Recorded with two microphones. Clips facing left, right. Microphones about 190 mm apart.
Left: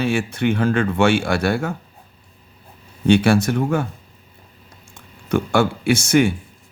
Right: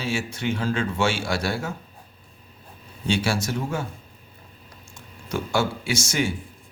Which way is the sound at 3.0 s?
55° left (ahead or behind).